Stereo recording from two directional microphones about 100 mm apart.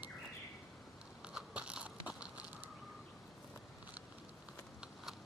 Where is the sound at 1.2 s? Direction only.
10° right (ahead or behind).